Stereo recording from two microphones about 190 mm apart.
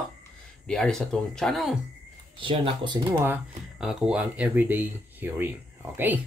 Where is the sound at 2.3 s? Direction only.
25° right (ahead or behind).